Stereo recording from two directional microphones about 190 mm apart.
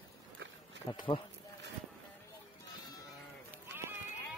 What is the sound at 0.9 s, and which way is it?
Speech, 25° left (ahead or behind).